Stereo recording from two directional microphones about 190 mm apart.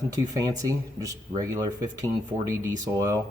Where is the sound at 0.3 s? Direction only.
20° right (ahead or behind).